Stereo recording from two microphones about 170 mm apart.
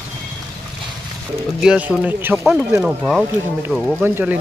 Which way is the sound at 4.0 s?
10° right (ahead or behind).